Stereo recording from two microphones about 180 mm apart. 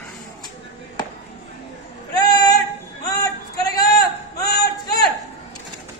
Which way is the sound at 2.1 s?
20° left (ahead or behind).